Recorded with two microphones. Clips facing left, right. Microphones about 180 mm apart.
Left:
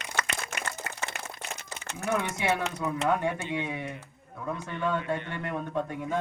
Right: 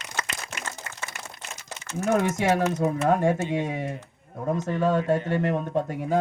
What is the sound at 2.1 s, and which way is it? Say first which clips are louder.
Speech: right 6 dB; 45° right (ahead or behind).